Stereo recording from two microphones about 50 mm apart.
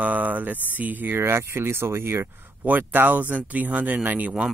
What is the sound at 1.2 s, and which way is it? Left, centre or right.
Speech, right.